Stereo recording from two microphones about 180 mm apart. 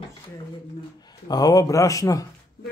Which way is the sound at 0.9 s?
20° left (ahead or behind).